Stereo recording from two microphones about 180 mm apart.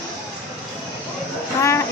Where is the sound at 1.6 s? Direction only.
15° left (ahead or behind).